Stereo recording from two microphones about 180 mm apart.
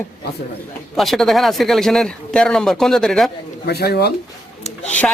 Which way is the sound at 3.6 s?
65° left (ahead or behind).